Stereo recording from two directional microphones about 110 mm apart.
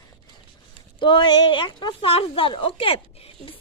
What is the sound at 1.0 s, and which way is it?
Speech, 50° left (ahead or behind).